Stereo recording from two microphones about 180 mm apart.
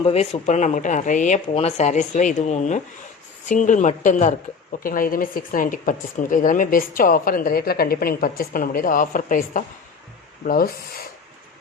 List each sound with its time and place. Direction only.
0.0 s a woman's voice: 35° left (ahead or behind); by 11.0 s 55° left (ahead or behind)